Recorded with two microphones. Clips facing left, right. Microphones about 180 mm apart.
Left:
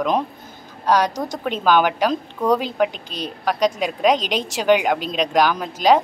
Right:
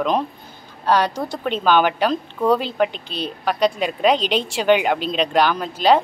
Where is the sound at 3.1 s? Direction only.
40° left (ahead or behind).